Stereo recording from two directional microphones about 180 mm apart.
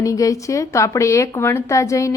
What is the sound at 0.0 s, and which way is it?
Speech, 20° left (ahead or behind).